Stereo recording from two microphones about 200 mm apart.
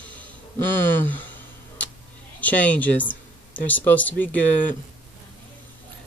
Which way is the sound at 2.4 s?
5° left (ahead or behind).